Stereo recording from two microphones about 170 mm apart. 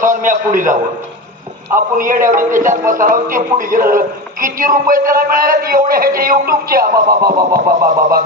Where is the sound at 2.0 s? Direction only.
50° right (ahead or behind).